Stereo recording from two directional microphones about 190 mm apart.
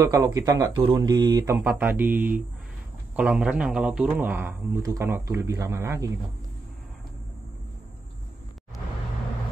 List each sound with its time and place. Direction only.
0.0 s speech: 15° right (ahead or behind)